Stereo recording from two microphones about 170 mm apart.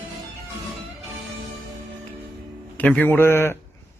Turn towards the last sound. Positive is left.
turn(degrees=15)  # may be behind; listen again after turning